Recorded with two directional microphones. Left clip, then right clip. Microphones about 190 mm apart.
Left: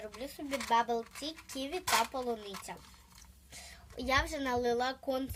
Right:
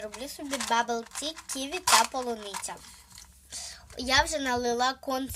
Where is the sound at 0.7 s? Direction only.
40° right (ahead or behind).